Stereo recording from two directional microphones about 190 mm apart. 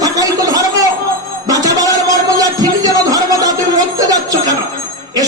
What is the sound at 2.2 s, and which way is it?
Speech, 20° right (ahead or behind).